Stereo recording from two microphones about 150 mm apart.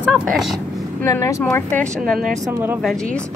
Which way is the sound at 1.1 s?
20° left (ahead or behind).